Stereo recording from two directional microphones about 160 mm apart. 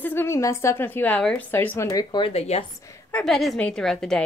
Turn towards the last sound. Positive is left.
turn(degrees=0)  # may be behind; listen again after turning